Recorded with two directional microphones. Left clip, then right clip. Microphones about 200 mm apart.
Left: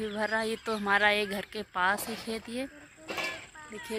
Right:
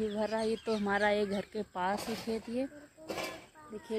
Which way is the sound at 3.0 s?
60° right (ahead or behind).